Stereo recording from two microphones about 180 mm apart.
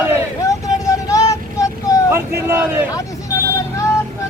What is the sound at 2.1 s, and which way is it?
Speech, 15° right (ahead or behind).